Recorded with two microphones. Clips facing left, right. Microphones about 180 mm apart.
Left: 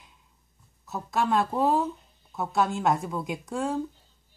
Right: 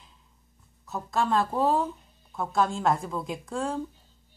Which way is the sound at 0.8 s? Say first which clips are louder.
Even; 5° left (ahead or behind).